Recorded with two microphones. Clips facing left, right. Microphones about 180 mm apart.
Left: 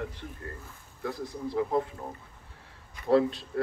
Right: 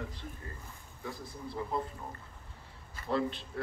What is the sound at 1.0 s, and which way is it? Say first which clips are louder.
Speech: left 8 dB; 70° left (ahead or behind).